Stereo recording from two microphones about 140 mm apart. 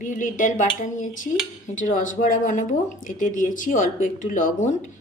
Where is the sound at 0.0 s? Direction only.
65° left (ahead or behind).